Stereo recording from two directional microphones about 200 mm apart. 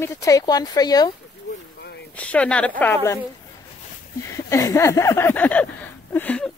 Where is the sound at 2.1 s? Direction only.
5° left (ahead or behind).